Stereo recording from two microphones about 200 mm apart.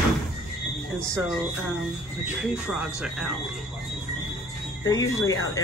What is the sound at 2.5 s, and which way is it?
Speech, 5° right (ahead or behind).